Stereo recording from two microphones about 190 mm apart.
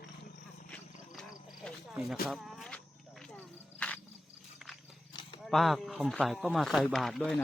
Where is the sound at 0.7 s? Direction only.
5° left (ahead or behind).